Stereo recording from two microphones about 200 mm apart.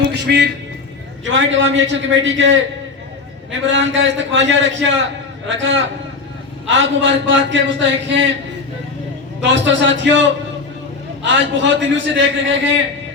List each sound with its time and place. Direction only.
0.3 s a man's voice: 55° right (ahead or behind)
1.2 s a man's voice: 70° right (ahead or behind)
3.7 s a man's voice: 70° right (ahead or behind)
9.4 s a man's voice: 65° right (ahead or behind)